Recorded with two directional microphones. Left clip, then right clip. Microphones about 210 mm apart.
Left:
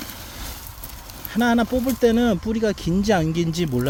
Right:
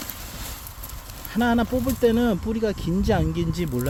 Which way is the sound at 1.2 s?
5° left (ahead or behind).